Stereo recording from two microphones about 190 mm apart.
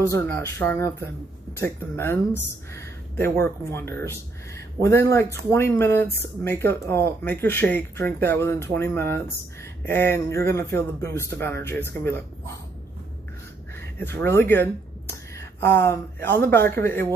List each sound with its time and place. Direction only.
0.1 s speech: 10° left (ahead or behind)
13.7 s speech: 10° left (ahead or behind)